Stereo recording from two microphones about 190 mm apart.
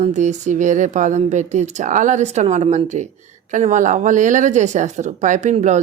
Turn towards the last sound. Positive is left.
turn(degrees=-35)  # may be behind; listen again after turning